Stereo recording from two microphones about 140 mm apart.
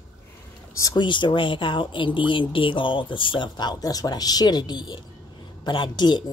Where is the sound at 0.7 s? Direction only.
30° left (ahead or behind).